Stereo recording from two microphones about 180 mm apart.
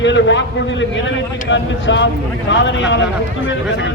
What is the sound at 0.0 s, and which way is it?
A man's voice, 90° left.